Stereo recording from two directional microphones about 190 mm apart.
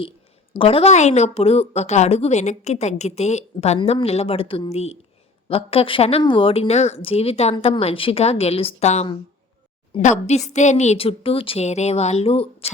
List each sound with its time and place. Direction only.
0.6 s speech: 30° left (ahead or behind)